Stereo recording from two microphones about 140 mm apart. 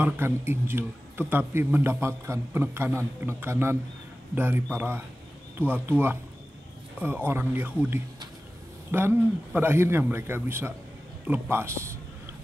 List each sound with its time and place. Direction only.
0.0 s a man's voice: 15° right (ahead or behind)